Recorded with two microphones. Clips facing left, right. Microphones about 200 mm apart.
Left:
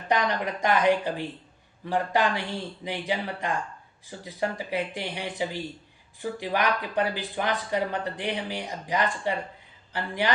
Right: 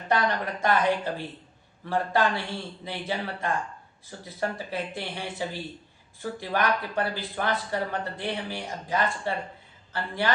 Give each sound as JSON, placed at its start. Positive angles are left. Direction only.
{"t": 0.1, "sound": "speech", "side_deg": 15}